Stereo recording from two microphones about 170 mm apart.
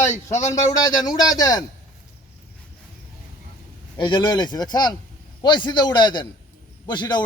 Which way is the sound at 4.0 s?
25° left (ahead or behind).